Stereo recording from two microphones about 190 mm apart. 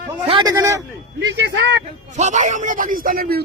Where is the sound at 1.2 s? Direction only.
65° right (ahead or behind).